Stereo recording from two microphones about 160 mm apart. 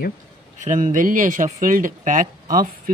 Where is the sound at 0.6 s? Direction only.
50° right (ahead or behind).